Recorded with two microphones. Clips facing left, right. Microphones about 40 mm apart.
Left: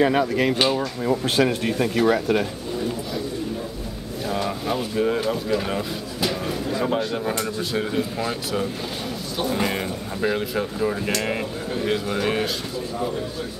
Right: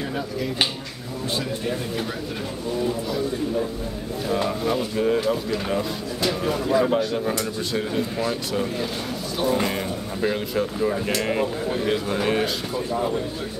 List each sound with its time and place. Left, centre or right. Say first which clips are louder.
0.0 s speech: left 9 dB; left
4.5 s speech: right 2 dB; centre
6.4 s speech: right 4 dB; centre
6.9 s speech: right 1 dB; centre